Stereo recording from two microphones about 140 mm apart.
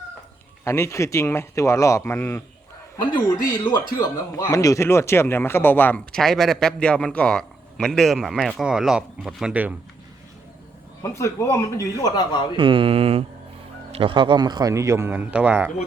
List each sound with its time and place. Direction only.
0.6 s speech: 20° left (ahead or behind)
3.9 s speech: 25° left (ahead or behind); by 9.7 s 10° right (ahead or behind)
11.0 s speech: 20° left (ahead or behind)
12.5 s mantra: 40° right (ahead or behind)
13.9 s a man's voice: 40° right (ahead or behind); by 15.7 s 10° right (ahead or behind)